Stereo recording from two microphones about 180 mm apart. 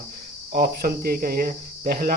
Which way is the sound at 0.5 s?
55° right (ahead or behind).